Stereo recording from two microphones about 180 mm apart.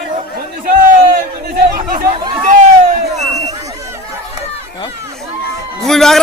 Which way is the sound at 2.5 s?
50° right (ahead or behind).